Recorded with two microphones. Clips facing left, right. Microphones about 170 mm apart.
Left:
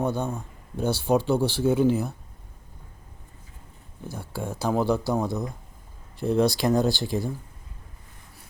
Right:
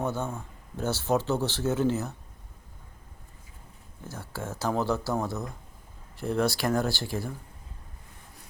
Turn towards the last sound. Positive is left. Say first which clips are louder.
# left 5 dB
turn(degrees=15)  # may be behind; listen again after turning